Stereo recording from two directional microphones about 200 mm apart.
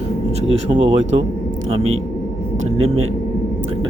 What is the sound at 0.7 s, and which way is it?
Speech, 30° right (ahead or behind).